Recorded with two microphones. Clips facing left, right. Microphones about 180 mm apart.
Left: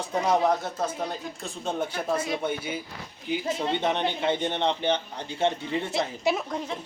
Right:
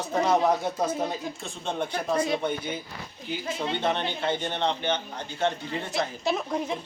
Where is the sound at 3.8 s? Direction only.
20° left (ahead or behind).